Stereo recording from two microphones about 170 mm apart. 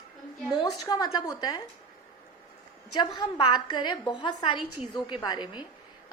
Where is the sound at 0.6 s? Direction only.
20° left (ahead or behind).